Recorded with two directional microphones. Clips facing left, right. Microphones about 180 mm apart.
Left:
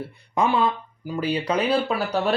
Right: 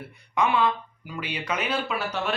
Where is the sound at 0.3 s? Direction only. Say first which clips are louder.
Left 2 dB; 35° left (ahead or behind).